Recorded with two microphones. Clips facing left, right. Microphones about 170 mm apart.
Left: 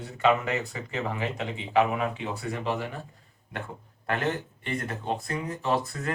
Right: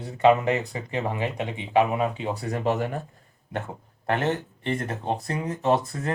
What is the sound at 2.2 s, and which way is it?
Speech, 45° right (ahead or behind).